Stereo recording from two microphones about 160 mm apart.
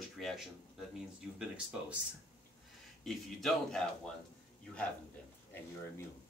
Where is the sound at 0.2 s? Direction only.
Centre (ahead or behind).